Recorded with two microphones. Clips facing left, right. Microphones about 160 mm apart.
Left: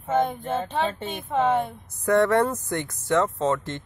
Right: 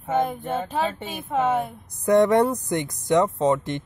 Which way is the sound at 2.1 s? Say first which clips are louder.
Right 3 dB; 15° right (ahead or behind).